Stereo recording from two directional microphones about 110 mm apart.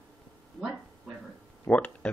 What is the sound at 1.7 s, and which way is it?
Speech, 10° left (ahead or behind).